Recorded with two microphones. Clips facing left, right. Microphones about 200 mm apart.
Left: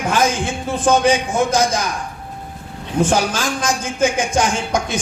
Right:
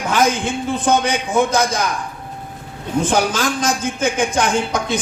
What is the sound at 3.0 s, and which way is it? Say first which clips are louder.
A woman's voice: left 1 dB; 55° right (ahead or behind).